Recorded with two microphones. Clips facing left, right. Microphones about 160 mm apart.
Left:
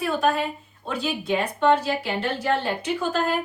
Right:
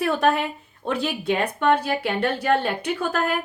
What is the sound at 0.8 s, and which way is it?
Speech, 65° right (ahead or behind).